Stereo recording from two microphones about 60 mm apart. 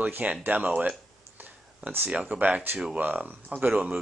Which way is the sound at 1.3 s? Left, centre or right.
Right.